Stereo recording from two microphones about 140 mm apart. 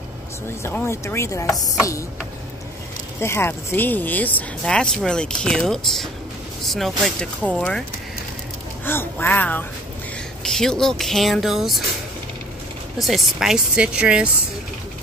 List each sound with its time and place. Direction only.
0.7 s chopping: 20° left (ahead or behind)
3.2 s speech: 20° left (ahead or behind)
8.8 s speech: 15° left (ahead or behind); by 11.8 s centre (ahead or behind)
13.0 s speech: centre (ahead or behind)